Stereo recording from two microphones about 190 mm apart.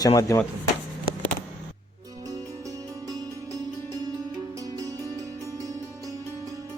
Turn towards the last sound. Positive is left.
turn(degrees=-15)  # may be behind; listen again after turning